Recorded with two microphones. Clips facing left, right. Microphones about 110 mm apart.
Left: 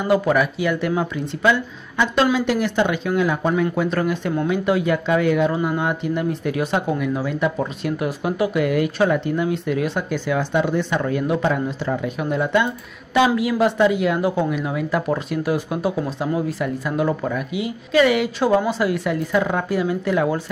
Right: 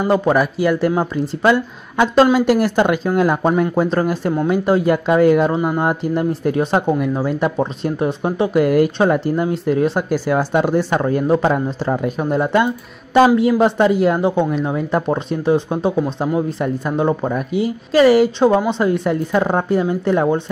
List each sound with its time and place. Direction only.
0.0 s speech: 30° right (ahead or behind)